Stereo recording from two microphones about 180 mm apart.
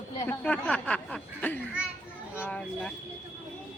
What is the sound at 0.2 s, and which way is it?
Speech, 10° left (ahead or behind).